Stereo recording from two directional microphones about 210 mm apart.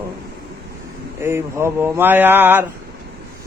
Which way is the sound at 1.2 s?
10° right (ahead or behind).